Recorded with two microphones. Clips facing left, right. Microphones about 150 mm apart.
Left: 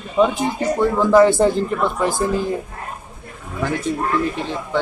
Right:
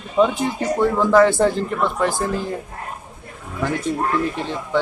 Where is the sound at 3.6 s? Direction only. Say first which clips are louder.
Even; centre (ahead or behind).